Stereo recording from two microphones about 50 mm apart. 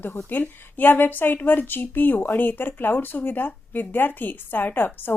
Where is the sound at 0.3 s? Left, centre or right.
Left.